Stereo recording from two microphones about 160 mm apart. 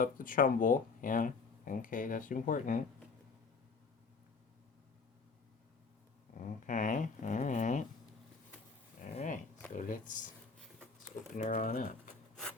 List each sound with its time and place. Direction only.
0.0 s speech: 60° left (ahead or behind)
6.3 s speech: 55° left (ahead or behind)
9.1 s speech: 55° left (ahead or behind)
11.3 s speech: 50° left (ahead or behind)